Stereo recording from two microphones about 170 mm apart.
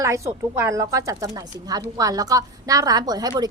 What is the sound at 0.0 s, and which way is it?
Speech, 15° right (ahead or behind).